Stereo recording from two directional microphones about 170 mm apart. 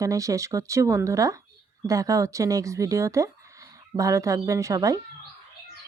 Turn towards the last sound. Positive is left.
turn(degrees=-20)  # may be behind; listen again after turning